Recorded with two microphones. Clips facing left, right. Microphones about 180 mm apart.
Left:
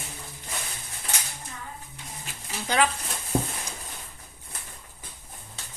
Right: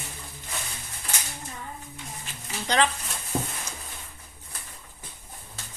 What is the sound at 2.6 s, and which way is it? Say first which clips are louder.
Speech: even; 10° left (ahead or behind).